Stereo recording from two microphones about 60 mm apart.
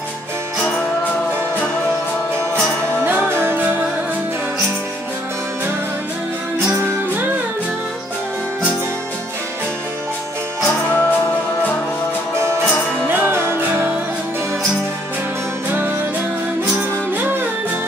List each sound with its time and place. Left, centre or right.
3.0 s music: right
10.7 s music: left
12.4 s music: right